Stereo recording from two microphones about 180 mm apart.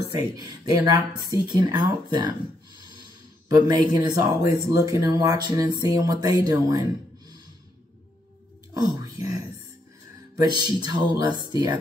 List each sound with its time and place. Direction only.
0.1 s speech: 20° right (ahead or behind)
3.4 s speech: 20° right (ahead or behind)
8.7 s whispering: 20° right (ahead or behind)
10.3 s speech: 25° right (ahead or behind)